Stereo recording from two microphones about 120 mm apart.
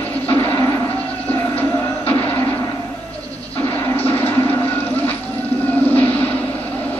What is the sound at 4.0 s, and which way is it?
Vehicle, 15° left (ahead or behind).